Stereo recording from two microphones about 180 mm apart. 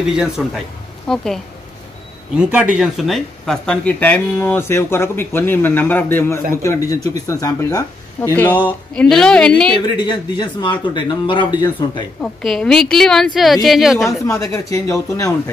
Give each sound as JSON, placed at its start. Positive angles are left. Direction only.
{"t": 0.0, "sound": "a woman's voice", "side_deg": -5}
{"t": 9.9, "sound": "speech", "side_deg": 25}
{"t": 12.2, "sound": "a woman's voice", "side_deg": 5}
{"t": 14.4, "sound": "speech", "side_deg": 20}